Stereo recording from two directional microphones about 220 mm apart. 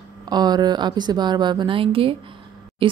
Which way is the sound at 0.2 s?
20° right (ahead or behind).